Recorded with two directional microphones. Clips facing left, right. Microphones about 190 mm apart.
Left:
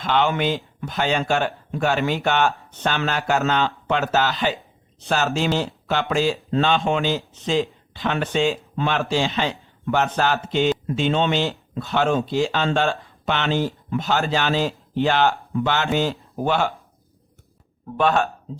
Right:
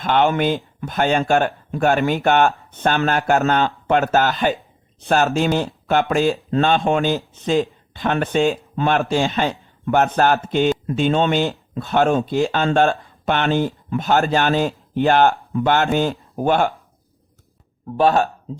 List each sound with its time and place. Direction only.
0.0 s speech: 50° right (ahead or behind)
17.9 s speech: 35° right (ahead or behind)